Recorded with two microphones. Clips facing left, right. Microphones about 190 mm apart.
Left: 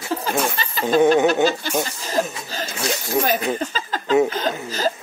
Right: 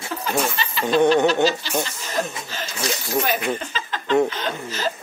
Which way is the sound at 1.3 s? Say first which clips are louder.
Left 1 dB; 50° left (ahead or behind).